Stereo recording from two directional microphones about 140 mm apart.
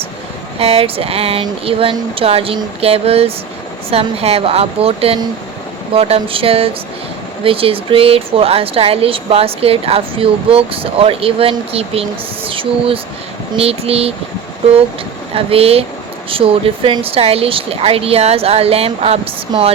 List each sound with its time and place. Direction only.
0.6 s a woman's voice: 45° right (ahead or behind)
15.4 s a woman's voice: 45° right (ahead or behind)